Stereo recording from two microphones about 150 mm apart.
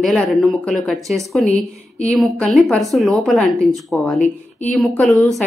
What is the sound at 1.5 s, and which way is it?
Speech, 45° left (ahead or behind).